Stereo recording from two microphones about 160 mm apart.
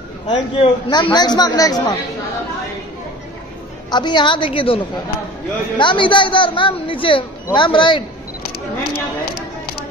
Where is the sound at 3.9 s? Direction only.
30° left (ahead or behind).